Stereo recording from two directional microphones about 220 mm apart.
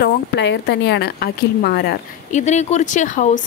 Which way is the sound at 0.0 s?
50° left (ahead or behind).